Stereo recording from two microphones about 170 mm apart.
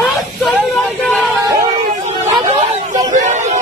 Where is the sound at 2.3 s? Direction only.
35° right (ahead or behind).